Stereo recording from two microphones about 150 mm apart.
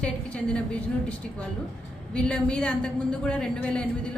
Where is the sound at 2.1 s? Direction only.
5° left (ahead or behind).